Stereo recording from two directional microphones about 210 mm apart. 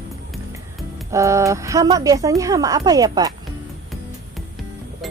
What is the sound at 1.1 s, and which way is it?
Speech, 15° right (ahead or behind).